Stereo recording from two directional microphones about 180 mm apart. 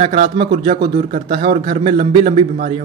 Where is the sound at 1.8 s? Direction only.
35° right (ahead or behind).